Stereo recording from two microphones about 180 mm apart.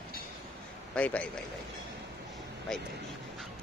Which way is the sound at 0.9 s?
5° left (ahead or behind).